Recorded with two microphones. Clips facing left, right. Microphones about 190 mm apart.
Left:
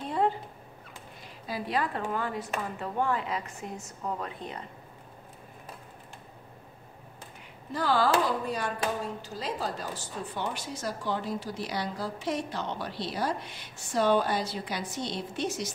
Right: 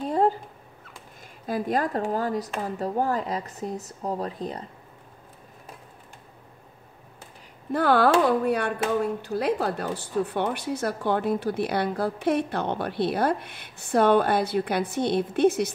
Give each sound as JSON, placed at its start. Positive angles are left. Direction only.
{"t": 0.0, "sound": "dog", "side_deg": -40}
{"t": 1.4, "sound": "speech", "side_deg": -45}
{"t": 7.7, "sound": "speech", "side_deg": -60}